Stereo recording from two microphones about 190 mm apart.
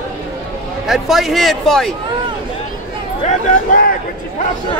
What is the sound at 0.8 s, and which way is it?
Speech, centre (ahead or behind).